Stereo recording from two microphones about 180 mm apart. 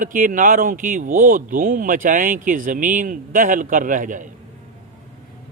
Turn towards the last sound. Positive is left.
turn(degrees=-45)  # may be behind; listen again after turning